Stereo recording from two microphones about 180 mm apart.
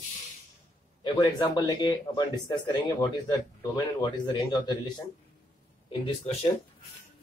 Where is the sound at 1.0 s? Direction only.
20° left (ahead or behind).